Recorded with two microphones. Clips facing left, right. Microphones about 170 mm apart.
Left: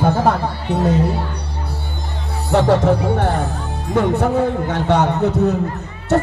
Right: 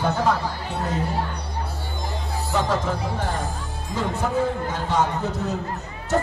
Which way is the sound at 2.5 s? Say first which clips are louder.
Left 10 dB; 70° left (ahead or behind).